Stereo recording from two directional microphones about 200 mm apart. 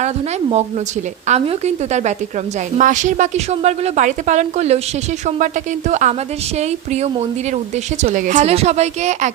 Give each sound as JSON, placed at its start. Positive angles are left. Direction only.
{"t": 1.3, "sound": "a woman's voice", "side_deg": -35}
{"t": 5.9, "sound": "a woman's voice", "side_deg": -35}